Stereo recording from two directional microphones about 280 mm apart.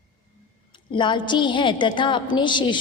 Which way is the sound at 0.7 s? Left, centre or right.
Centre.